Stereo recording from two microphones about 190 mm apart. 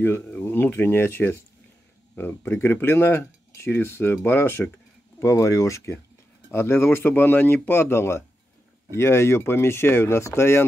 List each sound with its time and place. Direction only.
0.0 s speech: 10° left (ahead or behind)